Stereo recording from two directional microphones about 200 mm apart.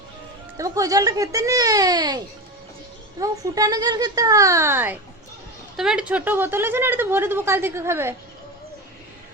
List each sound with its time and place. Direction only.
0.5 s speech: 15° right (ahead or behind)